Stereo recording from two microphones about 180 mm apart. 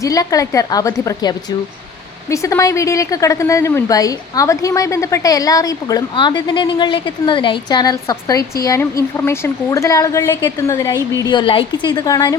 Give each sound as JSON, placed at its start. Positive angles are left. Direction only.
{"t": 0.0, "sound": "a woman's voice", "side_deg": 20}